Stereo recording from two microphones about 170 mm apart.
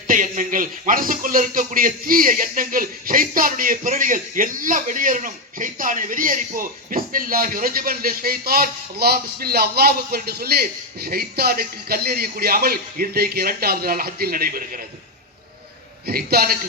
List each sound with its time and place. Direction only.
0.1 s speech: 50° right (ahead or behind)
16.0 s speech: 65° right (ahead or behind)